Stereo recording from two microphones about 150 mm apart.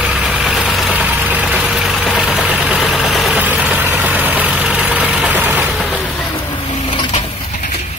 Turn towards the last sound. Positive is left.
turn(degrees=35)  # may be behind; listen again after turning